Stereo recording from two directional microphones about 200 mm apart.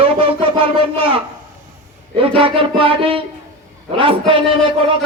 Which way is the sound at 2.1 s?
25° right (ahead or behind).